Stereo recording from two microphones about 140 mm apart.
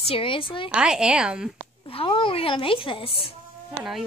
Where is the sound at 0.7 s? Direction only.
5° right (ahead or behind).